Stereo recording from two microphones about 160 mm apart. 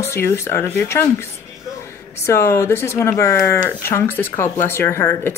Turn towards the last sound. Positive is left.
turn(degrees=15)  # may be behind; listen again after turning